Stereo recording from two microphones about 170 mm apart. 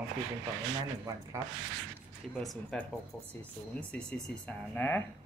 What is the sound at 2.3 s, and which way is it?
A man's voice, centre (ahead or behind).